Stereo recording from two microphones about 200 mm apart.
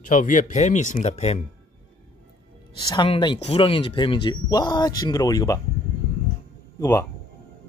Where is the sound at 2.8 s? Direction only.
20° left (ahead or behind).